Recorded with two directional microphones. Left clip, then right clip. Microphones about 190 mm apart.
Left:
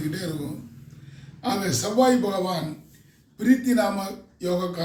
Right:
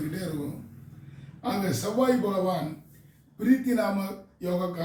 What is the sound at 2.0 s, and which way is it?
Speech, 15° left (ahead or behind).